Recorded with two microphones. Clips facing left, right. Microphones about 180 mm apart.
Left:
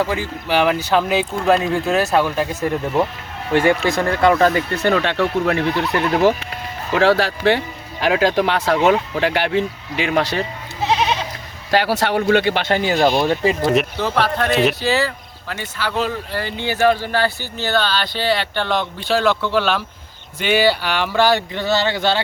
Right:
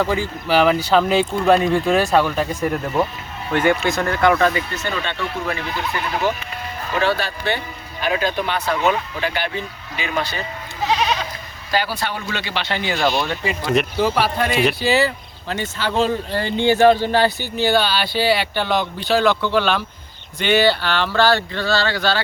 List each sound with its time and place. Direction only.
0.4 s speech: 10° left (ahead or behind)
3.5 s speech: 30° left (ahead or behind)
4.7 s speech: 60° left (ahead or behind)
6.9 s speech: 90° left
10.8 s goat: 25° left (ahead or behind)
11.7 s speech: 75° left (ahead or behind); by 13.6 s 35° left (ahead or behind)
14.0 s speech: 10° right (ahead or behind); by 22.2 s 25° left (ahead or behind)